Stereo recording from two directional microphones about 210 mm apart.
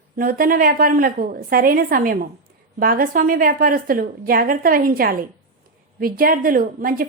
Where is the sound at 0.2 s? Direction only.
45° right (ahead or behind).